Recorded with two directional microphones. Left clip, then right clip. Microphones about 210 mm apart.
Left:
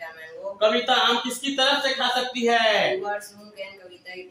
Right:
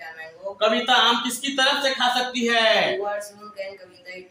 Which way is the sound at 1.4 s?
15° right (ahead or behind).